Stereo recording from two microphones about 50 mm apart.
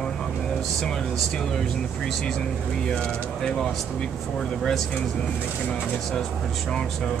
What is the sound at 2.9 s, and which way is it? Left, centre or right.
Speech, centre.